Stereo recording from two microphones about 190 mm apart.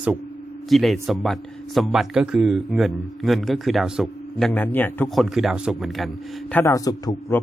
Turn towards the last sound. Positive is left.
turn(degrees=20)  # may be behind; listen again after turning